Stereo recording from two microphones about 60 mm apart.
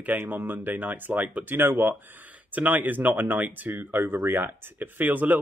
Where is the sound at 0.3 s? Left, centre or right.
Right.